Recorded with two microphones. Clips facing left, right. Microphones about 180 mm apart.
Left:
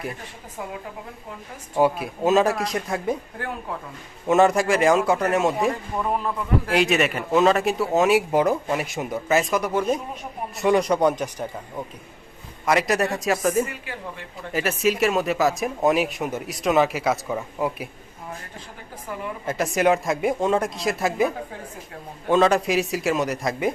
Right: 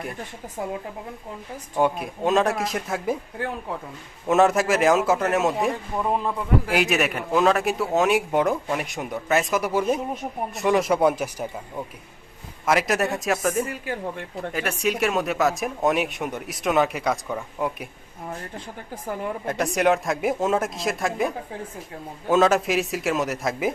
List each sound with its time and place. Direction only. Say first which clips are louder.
1.7 s speech: left 2 dB; 5° left (ahead or behind)
4.3 s speech: left 1 dB; centre (ahead or behind)
6.0 s speech: right 2 dB; 15° right (ahead or behind)
6.7 s speech: left 2 dB; 5° right (ahead or behind)
12.6 s speech: left 1 dB; centre (ahead or behind)
13.7 s speech: right 5 dB; 45° right (ahead or behind)
14.5 s speech: left 4 dB; 5° left (ahead or behind)
19.5 s speech: left 1 dB; centre (ahead or behind)